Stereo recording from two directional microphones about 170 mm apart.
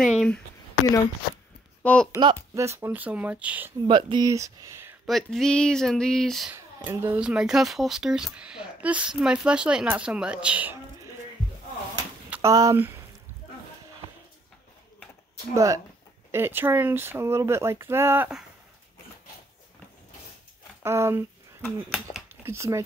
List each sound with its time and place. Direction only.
0.0 s speech: centre (ahead or behind)
1.8 s speech: 5° left (ahead or behind)
2.1 s speech: 20° right (ahead or behind)
3.8 s speech: 30° right (ahead or behind)
5.0 s speech: centre (ahead or behind)
6.5 s speech: 15° right (ahead or behind)
12.3 s speech: 15° right (ahead or behind)
15.5 s speech: 20° right (ahead or behind)
20.8 s speech: 15° right (ahead or behind)
22.3 s speech: 15° right (ahead or behind)